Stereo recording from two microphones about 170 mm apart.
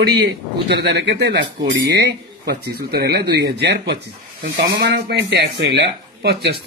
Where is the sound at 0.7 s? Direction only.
75° right (ahead or behind).